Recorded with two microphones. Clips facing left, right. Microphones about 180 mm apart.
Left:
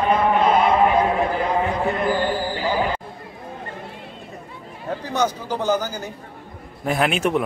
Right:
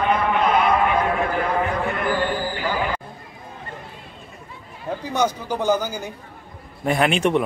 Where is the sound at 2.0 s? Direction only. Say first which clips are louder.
Left 1 dB; 25° left (ahead or behind).